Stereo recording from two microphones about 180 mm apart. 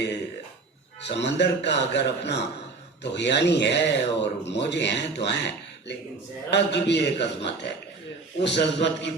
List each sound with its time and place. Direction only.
1.0 s speech: 75° left (ahead or behind)
6.5 s speech: 70° left (ahead or behind)